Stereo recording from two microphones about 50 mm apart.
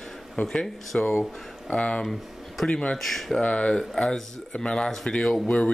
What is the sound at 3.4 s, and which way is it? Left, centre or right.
Speech, left.